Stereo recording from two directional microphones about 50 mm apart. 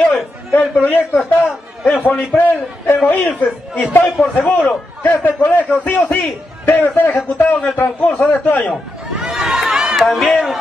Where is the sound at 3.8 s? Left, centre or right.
Left.